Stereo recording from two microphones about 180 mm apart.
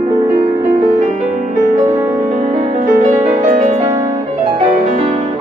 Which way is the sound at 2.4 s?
45° right (ahead or behind).